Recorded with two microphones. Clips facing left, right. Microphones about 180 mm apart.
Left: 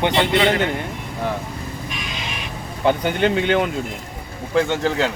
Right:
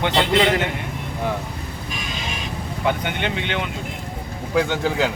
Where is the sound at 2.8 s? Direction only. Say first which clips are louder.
Left 6 dB; 35° left (ahead or behind).